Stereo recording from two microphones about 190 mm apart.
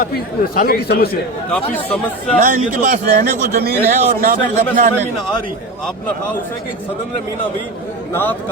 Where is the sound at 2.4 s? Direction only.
45° right (ahead or behind).